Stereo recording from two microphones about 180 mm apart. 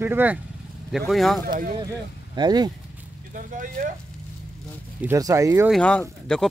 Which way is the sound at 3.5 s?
50° right (ahead or behind).